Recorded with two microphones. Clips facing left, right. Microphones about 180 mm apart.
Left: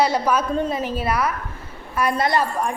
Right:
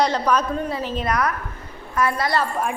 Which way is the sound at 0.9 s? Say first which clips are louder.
Even; 5° left (ahead or behind).